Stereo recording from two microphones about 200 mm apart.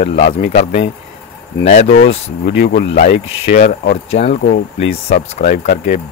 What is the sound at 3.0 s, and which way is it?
Speech, 45° left (ahead or behind).